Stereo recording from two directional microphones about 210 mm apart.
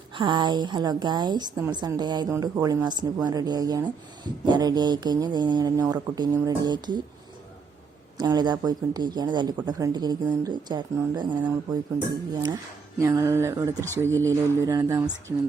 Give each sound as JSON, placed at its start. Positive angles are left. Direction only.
{"t": 0.1, "sound": "a woman's voice", "side_deg": -20}
{"t": 8.2, "sound": "a woman's voice", "side_deg": -20}
{"t": 13.0, "sound": "a sound", "side_deg": -15}